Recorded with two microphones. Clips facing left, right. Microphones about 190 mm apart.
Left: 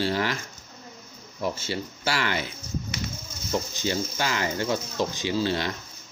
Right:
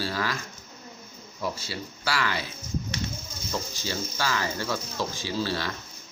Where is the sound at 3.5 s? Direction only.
20° left (ahead or behind).